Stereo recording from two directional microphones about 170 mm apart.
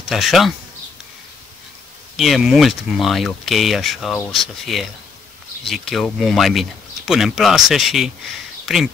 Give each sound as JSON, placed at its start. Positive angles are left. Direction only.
{"t": 0.1, "sound": "speech", "side_deg": 0}
{"t": 2.1, "sound": "speech", "side_deg": 0}